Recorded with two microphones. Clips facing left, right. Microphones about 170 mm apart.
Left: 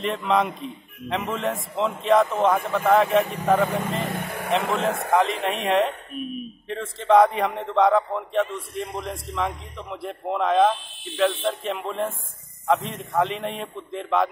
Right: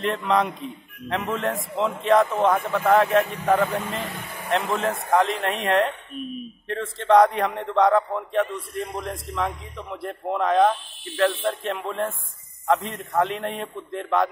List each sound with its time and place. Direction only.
0.0 s a man's voice: centre (ahead or behind)
4.0 s vehicle: 45° left (ahead or behind)
4.5 s a man's voice: centre (ahead or behind)